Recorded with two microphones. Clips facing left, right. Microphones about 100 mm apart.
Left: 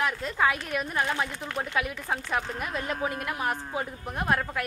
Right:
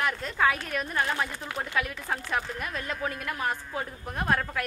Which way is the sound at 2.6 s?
20° left (ahead or behind).